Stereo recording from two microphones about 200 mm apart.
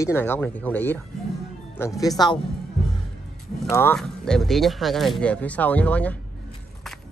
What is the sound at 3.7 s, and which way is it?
Speech, 10° left (ahead or behind).